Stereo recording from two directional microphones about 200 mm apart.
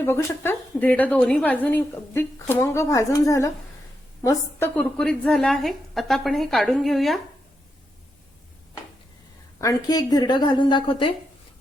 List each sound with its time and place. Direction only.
0.0 s a woman's voice: 10° left (ahead or behind)
9.6 s a woman's voice: 15° left (ahead or behind)